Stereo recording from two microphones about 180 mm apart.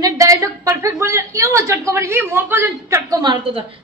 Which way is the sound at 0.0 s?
20° right (ahead or behind).